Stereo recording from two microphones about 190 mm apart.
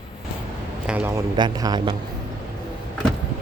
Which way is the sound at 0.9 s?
10° right (ahead or behind).